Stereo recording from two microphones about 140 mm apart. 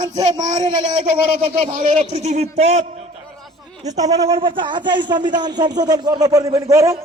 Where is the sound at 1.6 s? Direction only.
55° right (ahead or behind).